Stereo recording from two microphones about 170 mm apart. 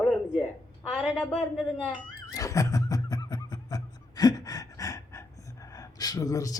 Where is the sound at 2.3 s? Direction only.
20° left (ahead or behind).